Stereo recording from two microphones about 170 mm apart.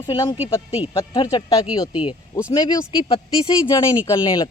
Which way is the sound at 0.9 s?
25° left (ahead or behind).